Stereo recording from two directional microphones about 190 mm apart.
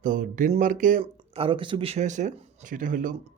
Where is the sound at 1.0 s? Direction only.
30° right (ahead or behind).